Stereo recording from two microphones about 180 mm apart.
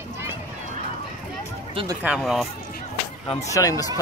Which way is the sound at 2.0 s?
Centre (ahead or behind).